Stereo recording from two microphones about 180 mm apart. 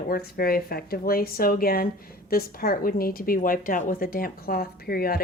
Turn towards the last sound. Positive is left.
turn(degrees=55)  # may be behind; listen again after turning